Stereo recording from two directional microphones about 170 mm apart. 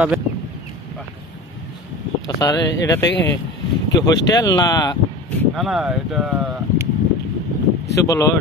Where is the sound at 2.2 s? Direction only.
20° left (ahead or behind).